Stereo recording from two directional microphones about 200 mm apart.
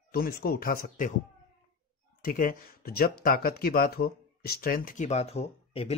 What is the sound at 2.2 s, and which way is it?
Speech, 45° left (ahead or behind).